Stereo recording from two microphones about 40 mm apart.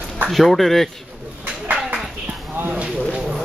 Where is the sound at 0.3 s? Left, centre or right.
Centre.